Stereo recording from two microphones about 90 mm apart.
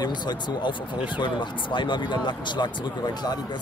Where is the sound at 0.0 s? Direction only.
55° left (ahead or behind).